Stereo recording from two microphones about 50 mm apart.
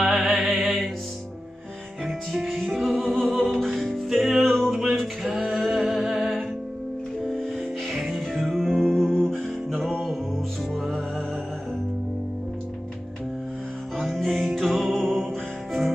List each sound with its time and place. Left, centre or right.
0.0 s music: centre
2.0 s music: centre
7.9 s music: centre
13.9 s music: centre